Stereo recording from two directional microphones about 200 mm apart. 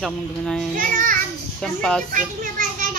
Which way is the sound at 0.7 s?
45° right (ahead or behind).